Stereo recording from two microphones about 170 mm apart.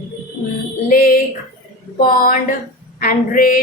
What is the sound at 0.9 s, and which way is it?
A woman's voice, 55° left (ahead or behind).